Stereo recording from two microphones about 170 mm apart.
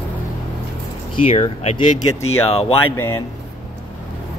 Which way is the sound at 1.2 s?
40° left (ahead or behind).